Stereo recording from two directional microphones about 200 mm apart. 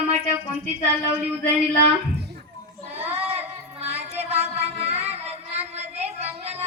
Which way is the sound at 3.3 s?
30° right (ahead or behind).